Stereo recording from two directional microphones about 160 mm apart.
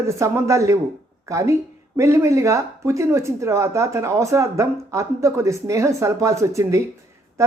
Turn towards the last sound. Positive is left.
turn(degrees=-20)  # may be behind; listen again after turning